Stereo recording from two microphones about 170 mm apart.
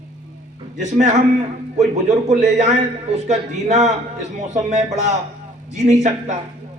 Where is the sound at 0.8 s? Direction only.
45° right (ahead or behind).